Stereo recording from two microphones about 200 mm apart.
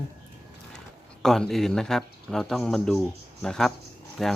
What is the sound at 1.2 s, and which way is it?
Speech, centre (ahead or behind).